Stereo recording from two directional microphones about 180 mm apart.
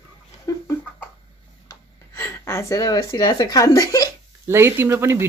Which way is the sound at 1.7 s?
15° left (ahead or behind).